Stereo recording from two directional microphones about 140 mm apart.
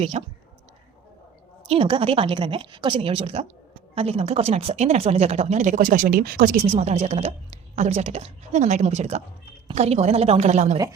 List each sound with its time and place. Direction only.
0.0 s speech: 45° right (ahead or behind)
1.6 s a woman's voice: 40° right (ahead or behind); by 6.6 s 85° right
6.7 s speech: 50° right (ahead or behind)